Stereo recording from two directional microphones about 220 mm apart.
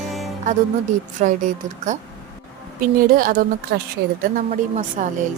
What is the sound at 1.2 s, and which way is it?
A woman's voice, 35° right (ahead or behind).